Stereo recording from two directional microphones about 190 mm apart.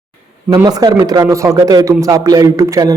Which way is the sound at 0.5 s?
20° right (ahead or behind).